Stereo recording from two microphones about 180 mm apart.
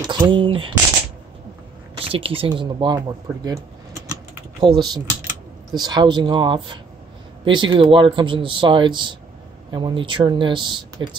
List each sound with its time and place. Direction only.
0.0 s speech: 25° right (ahead or behind)
2.0 s speech: 30° right (ahead or behind)